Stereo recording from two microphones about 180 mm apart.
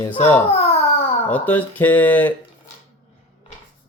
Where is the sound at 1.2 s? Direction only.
10° left (ahead or behind).